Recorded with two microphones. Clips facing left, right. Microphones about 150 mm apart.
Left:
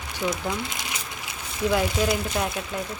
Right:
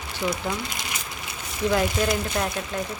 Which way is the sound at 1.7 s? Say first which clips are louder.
Even; 5° left (ahead or behind).